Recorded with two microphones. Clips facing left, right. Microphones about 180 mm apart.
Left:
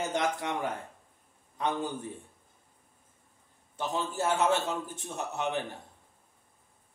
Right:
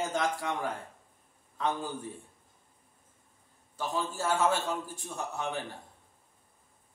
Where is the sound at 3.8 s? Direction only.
20° left (ahead or behind).